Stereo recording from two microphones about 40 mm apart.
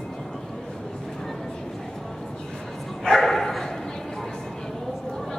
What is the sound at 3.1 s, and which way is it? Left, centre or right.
Bow-wow, centre.